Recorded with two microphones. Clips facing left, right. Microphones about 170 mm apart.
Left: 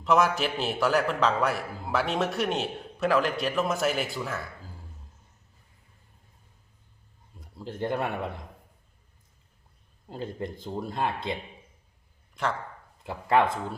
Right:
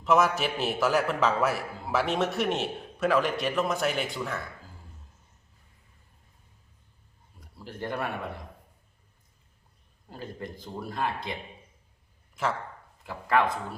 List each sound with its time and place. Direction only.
0.0 s a man's voice: centre (ahead or behind)
7.3 s speech: 25° left (ahead or behind)
10.1 s speech: 25° left (ahead or behind)
12.4 s a man's voice: 5° right (ahead or behind)
13.1 s speech: 25° left (ahead or behind)